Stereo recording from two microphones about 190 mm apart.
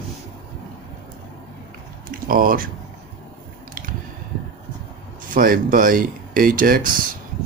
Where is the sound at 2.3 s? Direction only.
50° right (ahead or behind).